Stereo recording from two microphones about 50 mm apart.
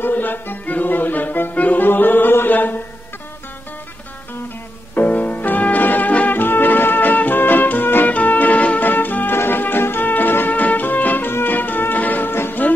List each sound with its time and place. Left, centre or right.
0.0 s music: left
4.9 s music: left